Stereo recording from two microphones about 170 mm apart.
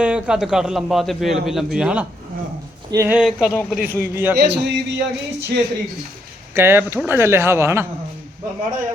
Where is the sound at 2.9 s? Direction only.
15° right (ahead or behind).